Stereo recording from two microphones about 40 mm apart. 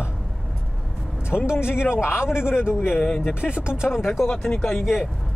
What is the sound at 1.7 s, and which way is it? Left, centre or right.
A man's voice, left.